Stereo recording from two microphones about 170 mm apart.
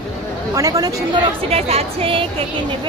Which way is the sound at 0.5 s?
20° right (ahead or behind).